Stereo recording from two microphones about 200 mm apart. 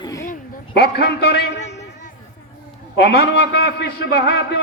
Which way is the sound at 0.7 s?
50° left (ahead or behind).